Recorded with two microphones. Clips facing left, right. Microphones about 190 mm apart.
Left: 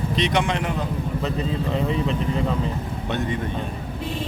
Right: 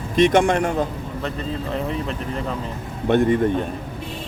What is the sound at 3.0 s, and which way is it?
Speech, 55° right (ahead or behind).